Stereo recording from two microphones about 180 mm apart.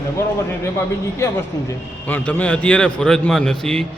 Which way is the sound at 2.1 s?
10° left (ahead or behind).